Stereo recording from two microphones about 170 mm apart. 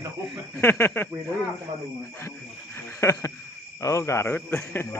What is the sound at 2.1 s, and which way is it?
Cricket, 15° left (ahead or behind).